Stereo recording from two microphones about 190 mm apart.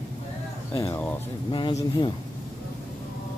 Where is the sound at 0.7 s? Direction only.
15° left (ahead or behind).